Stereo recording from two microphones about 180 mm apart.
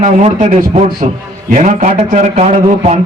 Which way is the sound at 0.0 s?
40° right (ahead or behind).